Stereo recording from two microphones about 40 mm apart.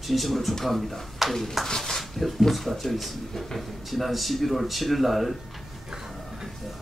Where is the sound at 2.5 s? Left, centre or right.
Centre.